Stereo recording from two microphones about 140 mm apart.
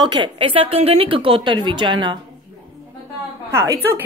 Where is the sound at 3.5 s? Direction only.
20° right (ahead or behind).